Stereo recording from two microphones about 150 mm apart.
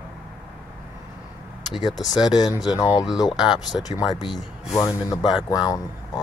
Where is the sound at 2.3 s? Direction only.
25° left (ahead or behind).